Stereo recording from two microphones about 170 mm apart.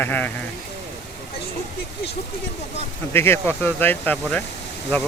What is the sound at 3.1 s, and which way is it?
Speech, 15° left (ahead or behind).